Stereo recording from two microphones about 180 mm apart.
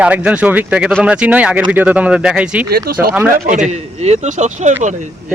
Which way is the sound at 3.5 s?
40° right (ahead or behind).